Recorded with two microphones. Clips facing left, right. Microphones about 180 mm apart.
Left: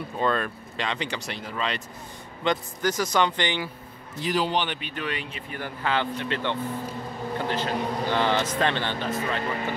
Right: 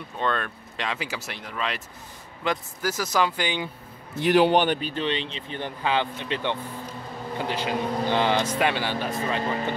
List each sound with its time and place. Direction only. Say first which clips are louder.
0.2 s speech: left 2 dB; 5° left (ahead or behind)
4.2 s a man's voice: right 7 dB; 60° right (ahead or behind)
4.6 s speech: right 6 dB; 40° right (ahead or behind); by 9.4 s 10° right (ahead or behind)